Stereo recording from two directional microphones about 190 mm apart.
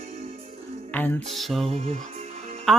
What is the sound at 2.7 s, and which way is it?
Speech, 5° left (ahead or behind).